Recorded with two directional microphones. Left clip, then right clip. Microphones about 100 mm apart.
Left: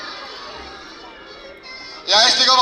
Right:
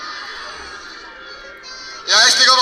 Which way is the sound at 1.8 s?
20° left (ahead or behind).